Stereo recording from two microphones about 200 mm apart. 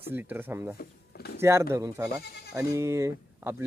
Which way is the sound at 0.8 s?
50° left (ahead or behind).